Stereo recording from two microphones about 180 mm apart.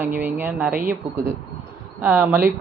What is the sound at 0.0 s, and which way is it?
Speech, 10° right (ahead or behind).